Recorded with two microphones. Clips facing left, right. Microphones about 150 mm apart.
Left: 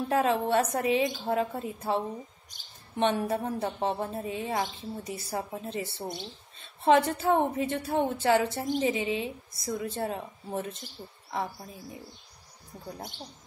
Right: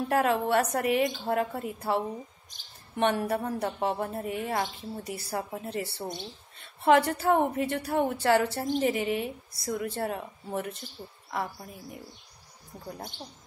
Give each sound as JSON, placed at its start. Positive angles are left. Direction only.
{"t": 0.1, "sound": "a woman's voice", "side_deg": 20}